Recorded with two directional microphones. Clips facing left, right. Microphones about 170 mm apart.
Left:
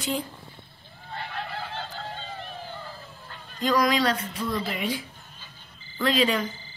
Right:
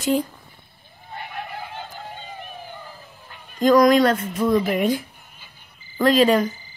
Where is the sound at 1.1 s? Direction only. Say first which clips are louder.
Right 1 dB; 15° right (ahead or behind).